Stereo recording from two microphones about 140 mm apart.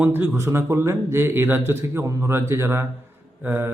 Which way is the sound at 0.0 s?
15° right (ahead or behind).